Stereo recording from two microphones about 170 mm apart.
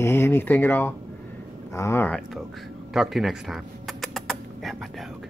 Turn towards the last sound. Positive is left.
turn(degrees=0)  # may be behind; listen again after turning